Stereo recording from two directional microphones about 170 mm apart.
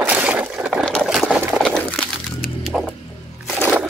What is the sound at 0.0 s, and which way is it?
Liquid, 10° right (ahead or behind).